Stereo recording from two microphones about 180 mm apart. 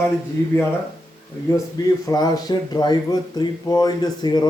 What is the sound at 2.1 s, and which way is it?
Speech, 20° left (ahead or behind).